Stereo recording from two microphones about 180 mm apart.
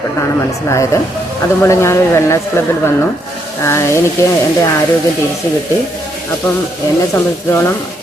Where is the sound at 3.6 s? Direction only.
15° left (ahead or behind).